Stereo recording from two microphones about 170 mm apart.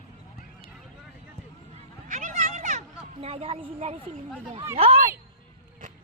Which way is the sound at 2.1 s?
40° right (ahead or behind).